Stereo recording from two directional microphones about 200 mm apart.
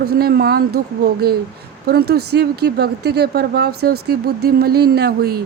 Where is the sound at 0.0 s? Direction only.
50° right (ahead or behind).